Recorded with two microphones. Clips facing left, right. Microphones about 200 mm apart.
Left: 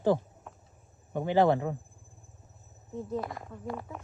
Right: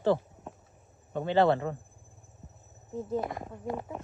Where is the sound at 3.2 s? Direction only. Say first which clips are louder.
Right 2 dB; 20° right (ahead or behind).